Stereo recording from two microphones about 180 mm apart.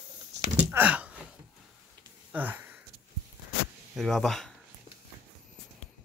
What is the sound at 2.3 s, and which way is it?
Sniff, 10° right (ahead or behind).